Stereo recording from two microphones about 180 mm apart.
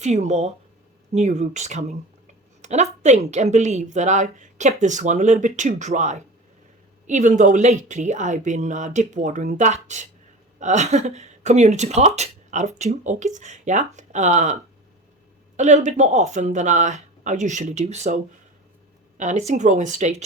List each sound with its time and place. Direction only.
0.0 s speech: 40° right (ahead or behind)